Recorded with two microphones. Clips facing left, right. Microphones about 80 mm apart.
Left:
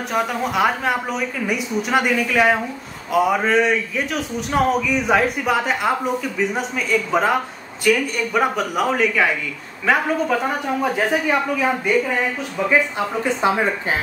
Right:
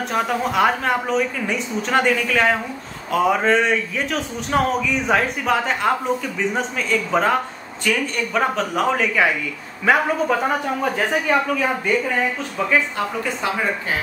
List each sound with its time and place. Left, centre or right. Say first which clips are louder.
0.1 s a woman's voice: even; centre
10.8 s a man's voice: left 1 dB; centre
13.2 s speech: left 8 dB; left